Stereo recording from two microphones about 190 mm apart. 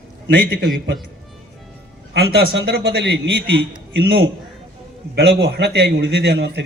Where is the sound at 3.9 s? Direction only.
60° right (ahead or behind).